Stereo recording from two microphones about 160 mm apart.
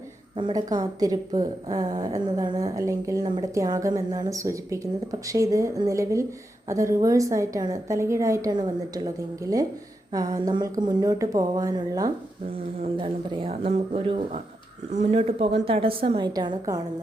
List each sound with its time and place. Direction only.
0.3 s a woman's voice: 25° right (ahead or behind)
14.8 s speech: 45° right (ahead or behind); by 16.8 s 25° right (ahead or behind)